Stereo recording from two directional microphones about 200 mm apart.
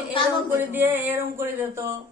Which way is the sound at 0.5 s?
10° right (ahead or behind).